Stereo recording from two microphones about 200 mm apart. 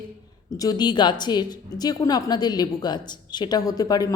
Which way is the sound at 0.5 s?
20° left (ahead or behind).